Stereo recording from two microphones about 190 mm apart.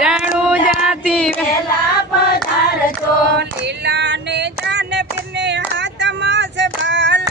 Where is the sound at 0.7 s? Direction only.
Centre (ahead or behind).